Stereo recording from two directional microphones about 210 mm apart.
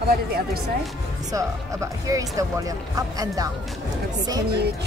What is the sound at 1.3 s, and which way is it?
Speech, 15° right (ahead or behind).